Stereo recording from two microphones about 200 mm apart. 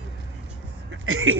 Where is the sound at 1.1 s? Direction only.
90° right.